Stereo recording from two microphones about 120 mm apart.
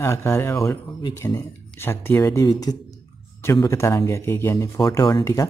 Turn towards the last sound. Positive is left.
turn(degrees=25)  # may be behind; listen again after turning